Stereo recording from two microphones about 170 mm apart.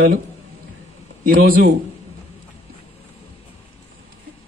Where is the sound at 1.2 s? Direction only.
60° right (ahead or behind).